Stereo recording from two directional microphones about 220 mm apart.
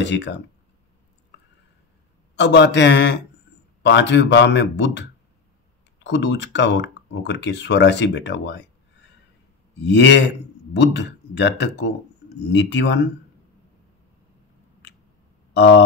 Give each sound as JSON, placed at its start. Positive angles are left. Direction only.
{"t": 0.0, "sound": "a man's voice", "side_deg": 55}
{"t": 2.3, "sound": "a man's voice", "side_deg": 50}
{"t": 6.0, "sound": "a man's voice", "side_deg": 55}
{"t": 15.5, "sound": "a sound", "side_deg": 50}